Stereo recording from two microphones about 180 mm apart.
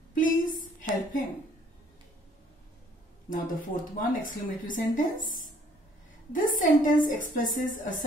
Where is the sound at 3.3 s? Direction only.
50° left (ahead or behind).